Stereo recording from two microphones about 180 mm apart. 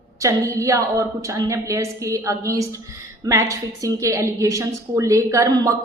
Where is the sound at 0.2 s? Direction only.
15° right (ahead or behind).